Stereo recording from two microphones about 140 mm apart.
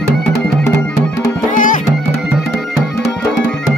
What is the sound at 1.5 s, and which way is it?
Music, 70° left (ahead or behind).